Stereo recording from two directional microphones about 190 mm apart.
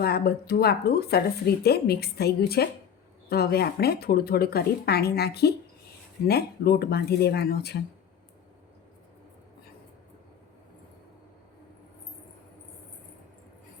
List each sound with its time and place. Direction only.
0.0 s speech: 55° left (ahead or behind)